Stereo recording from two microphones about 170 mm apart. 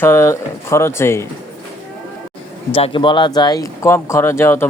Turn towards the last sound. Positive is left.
turn(degrees=15)  # may be behind; listen again after turning